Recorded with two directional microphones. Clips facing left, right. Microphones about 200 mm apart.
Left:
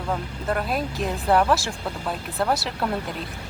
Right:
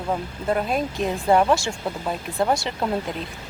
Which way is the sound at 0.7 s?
Centre (ahead or behind).